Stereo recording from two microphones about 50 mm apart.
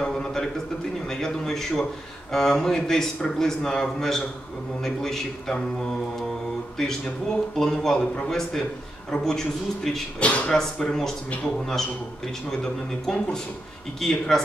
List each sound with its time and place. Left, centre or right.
0.0 s a sound: centre
1.0 s a man's voice: centre
10.2 s speech: left
10.6 s a man's voice: centre
14.0 s a man's voice: centre